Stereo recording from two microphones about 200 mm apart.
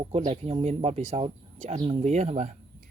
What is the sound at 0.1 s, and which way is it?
Speech, 30° right (ahead or behind).